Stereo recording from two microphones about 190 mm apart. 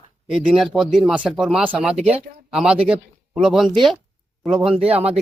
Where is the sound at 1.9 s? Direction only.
35° right (ahead or behind).